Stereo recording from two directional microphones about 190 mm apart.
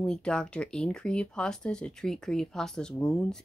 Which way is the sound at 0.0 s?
5° left (ahead or behind).